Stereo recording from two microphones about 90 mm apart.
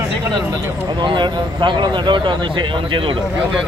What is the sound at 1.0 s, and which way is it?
Speech, 60° right (ahead or behind).